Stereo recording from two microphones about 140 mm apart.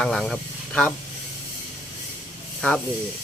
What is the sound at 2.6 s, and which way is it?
Speech, 5° left (ahead or behind).